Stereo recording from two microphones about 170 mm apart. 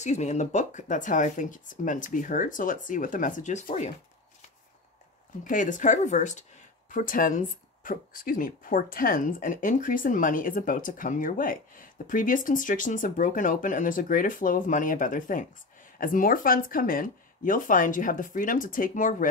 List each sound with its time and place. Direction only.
0.0 s speech: 45° left (ahead or behind)
5.4 s speech: 50° left (ahead or behind)